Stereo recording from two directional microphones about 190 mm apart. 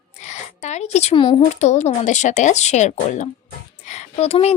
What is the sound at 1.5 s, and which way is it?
A woman's voice, 35° left (ahead or behind).